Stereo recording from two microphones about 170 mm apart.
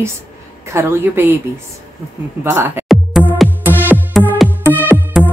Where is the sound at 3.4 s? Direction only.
10° right (ahead or behind).